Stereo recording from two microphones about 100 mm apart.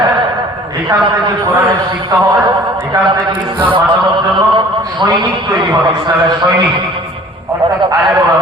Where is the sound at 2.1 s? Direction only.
40° right (ahead or behind).